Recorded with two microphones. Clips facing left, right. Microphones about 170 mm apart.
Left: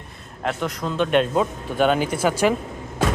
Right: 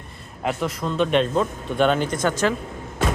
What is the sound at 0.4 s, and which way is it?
Speech, centre (ahead or behind).